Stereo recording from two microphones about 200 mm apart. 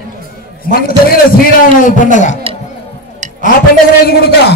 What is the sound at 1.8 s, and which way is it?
Speech, 40° left (ahead or behind).